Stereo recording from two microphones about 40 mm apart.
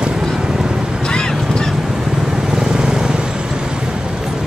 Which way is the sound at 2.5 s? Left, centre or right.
Centre.